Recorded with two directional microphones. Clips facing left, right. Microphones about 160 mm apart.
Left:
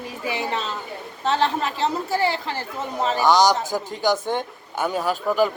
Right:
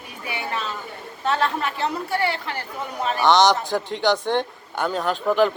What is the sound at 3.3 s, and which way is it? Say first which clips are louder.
A man's voice: right 1 dB; centre (ahead or behind).